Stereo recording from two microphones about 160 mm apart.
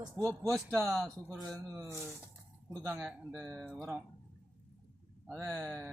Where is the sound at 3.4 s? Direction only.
20° right (ahead or behind).